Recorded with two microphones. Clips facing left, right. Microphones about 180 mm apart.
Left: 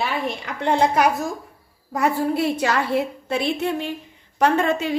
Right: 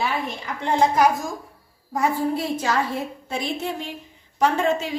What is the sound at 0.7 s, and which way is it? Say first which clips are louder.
A woman's voice: even; 65° left (ahead or behind).